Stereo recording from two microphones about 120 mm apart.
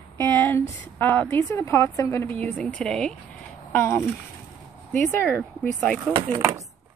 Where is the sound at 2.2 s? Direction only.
15° left (ahead or behind).